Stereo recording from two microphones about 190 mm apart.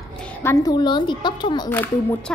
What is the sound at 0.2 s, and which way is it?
Speech, 10° left (ahead or behind).